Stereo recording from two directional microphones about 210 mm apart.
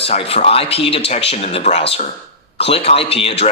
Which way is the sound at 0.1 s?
30° left (ahead or behind).